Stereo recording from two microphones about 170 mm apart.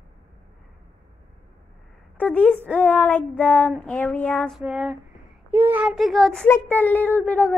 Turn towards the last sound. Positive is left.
turn(degrees=10)  # may be behind; listen again after turning